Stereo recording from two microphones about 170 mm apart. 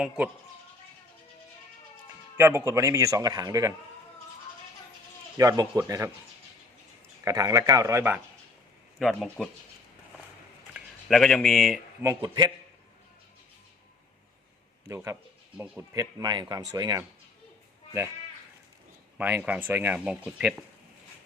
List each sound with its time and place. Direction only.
2.4 s a man's voice: 15° right (ahead or behind)
5.4 s a man's voice: 20° right (ahead or behind)
7.3 s a man's voice: 20° right (ahead or behind)
9.0 s speech: centre (ahead or behind)
10.8 s speech: centre (ahead or behind)
12.2 s a man's voice: 25° right (ahead or behind)
14.8 s a man's voice: 15° right (ahead or behind)
19.1 s speech: 10° right (ahead or behind)